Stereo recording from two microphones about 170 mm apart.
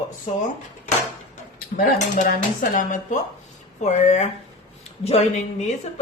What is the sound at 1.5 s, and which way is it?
Cutlery, 60° left (ahead or behind).